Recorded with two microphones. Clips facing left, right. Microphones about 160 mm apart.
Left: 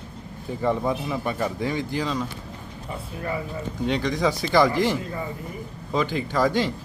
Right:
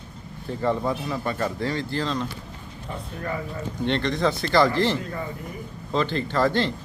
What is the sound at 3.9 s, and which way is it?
A man's voice, 10° left (ahead or behind).